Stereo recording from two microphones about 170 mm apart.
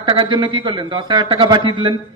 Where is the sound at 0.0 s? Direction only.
30° right (ahead or behind).